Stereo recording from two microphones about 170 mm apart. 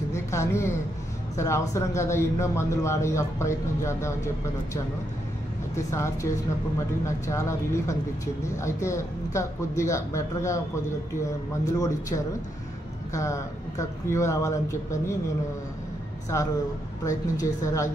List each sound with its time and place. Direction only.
0.1 s speech: 15° left (ahead or behind)
5.9 s speech: 15° left (ahead or behind)
13.1 s speech: 20° left (ahead or behind)
16.3 s a woman's voice: 15° left (ahead or behind)